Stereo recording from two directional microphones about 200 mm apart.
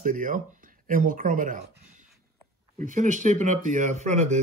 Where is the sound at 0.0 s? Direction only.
40° right (ahead or behind).